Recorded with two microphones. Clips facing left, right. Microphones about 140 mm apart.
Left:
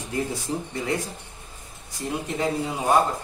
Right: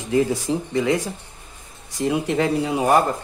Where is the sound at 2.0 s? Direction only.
80° right.